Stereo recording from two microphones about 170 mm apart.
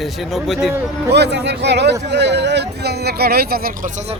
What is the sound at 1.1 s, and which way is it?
Speech, 80° right.